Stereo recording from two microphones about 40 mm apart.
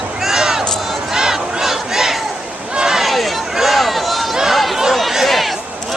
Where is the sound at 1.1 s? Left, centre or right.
Centre.